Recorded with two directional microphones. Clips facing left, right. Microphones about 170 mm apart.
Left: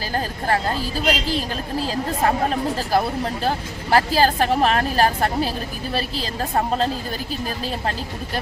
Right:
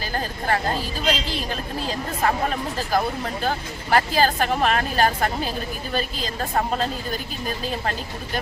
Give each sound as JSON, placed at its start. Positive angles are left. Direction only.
{"t": 0.1, "sound": "speech", "side_deg": 35}